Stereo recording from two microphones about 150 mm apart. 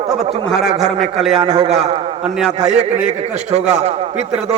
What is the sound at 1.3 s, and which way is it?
Speech, 40° right (ahead or behind).